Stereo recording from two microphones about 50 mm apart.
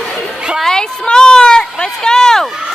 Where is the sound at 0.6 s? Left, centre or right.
Centre.